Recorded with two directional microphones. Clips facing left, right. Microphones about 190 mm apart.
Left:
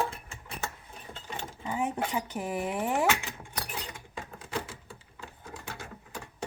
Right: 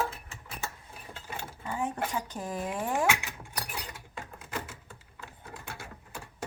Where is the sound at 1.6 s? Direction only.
15° left (ahead or behind).